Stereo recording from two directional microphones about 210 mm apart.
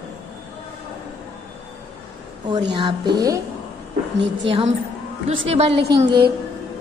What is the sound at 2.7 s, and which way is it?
Speech, 20° right (ahead or behind).